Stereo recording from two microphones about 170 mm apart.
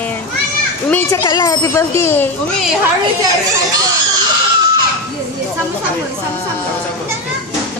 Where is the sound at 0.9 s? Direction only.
15° left (ahead or behind).